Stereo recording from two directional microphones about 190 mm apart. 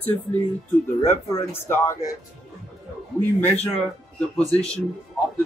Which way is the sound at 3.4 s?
10° left (ahead or behind).